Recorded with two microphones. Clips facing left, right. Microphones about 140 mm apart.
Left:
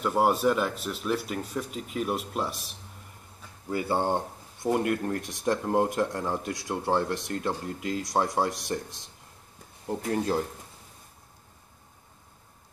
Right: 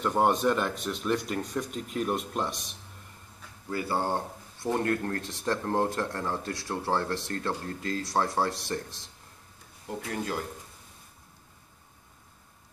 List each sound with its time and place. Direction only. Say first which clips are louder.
0.0 s speech: left 1 dB; 5° left (ahead or behind)
3.7 s speech: left 3 dB; 20° left (ahead or behind)
9.8 s speech: left 5 dB; 35° left (ahead or behind)